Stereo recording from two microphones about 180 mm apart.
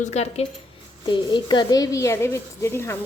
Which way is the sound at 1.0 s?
25° left (ahead or behind).